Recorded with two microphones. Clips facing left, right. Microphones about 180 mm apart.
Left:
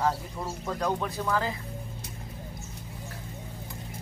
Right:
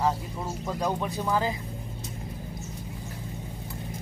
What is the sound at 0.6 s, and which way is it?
Speech, 15° right (ahead or behind).